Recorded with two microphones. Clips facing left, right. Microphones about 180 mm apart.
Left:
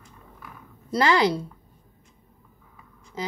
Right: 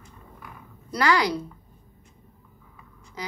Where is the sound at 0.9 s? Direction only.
25° left (ahead or behind).